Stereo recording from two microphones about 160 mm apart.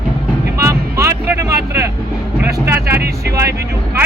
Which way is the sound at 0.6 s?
20° right (ahead or behind).